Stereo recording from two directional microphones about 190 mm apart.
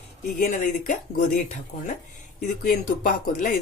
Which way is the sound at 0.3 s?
40° left (ahead or behind).